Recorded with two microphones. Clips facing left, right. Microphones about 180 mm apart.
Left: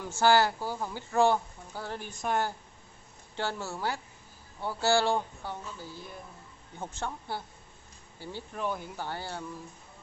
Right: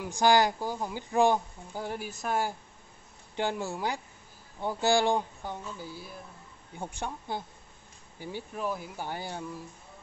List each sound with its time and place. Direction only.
0.0 s speech: 15° right (ahead or behind)
2.0 s speech: 5° right (ahead or behind)
3.3 s speech: 15° right (ahead or behind)
8.5 s speech: 5° right (ahead or behind)